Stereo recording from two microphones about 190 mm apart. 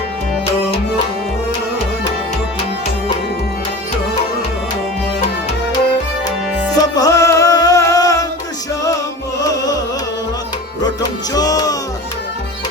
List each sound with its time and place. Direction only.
6.7 s music: 20° left (ahead or behind)
9.4 s carnatic music: 20° left (ahead or behind)
11.3 s music: 20° left (ahead or behind)